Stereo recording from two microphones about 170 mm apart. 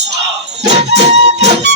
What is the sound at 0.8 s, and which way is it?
Music, 85° right.